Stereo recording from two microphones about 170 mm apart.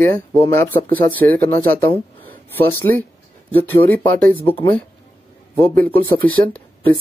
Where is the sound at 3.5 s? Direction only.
10° left (ahead or behind).